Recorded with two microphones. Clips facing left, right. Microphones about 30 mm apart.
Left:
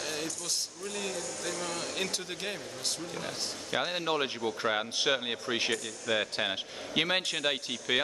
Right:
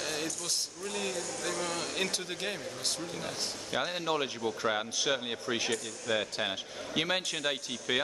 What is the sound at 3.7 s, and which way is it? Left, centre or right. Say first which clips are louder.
A man's voice: left 1 dB; centre.